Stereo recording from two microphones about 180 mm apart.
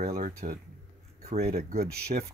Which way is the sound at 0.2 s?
55° right (ahead or behind).